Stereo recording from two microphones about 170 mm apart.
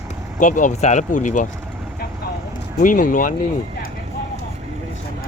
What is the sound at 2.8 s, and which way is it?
Speech, 50° left (ahead or behind).